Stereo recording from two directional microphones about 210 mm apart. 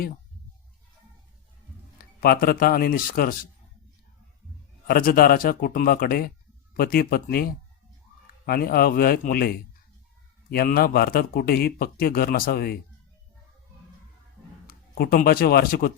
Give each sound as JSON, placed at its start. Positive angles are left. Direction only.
{"t": 2.0, "sound": "a man's voice", "side_deg": 45}
{"t": 4.9, "sound": "a man's voice", "side_deg": 45}
{"t": 14.7, "sound": "speech", "side_deg": 45}